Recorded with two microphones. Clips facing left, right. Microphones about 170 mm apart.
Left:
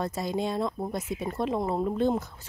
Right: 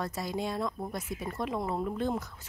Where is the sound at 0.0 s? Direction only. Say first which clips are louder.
Left 4 dB; 25° left (ahead or behind).